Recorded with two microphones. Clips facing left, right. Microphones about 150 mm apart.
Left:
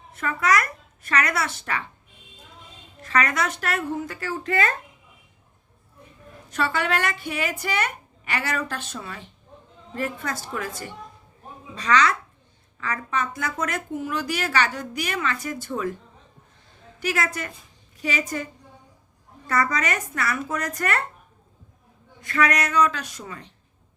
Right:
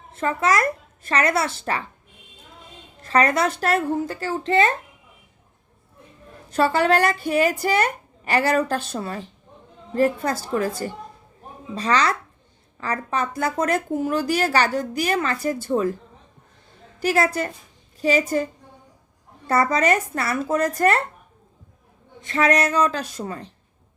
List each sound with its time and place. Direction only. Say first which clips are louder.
0.2 s speech: right 2 dB; 30° right (ahead or behind)
3.0 s speech: right 5 dB; 30° right (ahead or behind)
6.5 s speech: right 6 dB; 35° right (ahead or behind)
17.0 s speech: right 6 dB; 35° right (ahead or behind)
19.5 s speech: right 5 dB; 30° right (ahead or behind)
22.2 s speech: right 4 dB; 25° right (ahead or behind)